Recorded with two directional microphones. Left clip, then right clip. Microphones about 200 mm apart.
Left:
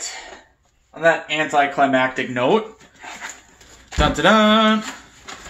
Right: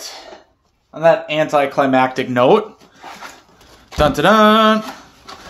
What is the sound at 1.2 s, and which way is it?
Speech, 55° right (ahead or behind).